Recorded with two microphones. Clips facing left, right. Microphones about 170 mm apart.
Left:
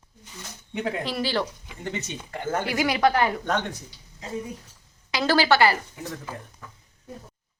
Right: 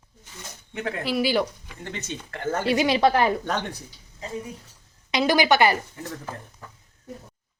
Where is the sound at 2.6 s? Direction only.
25° right (ahead or behind).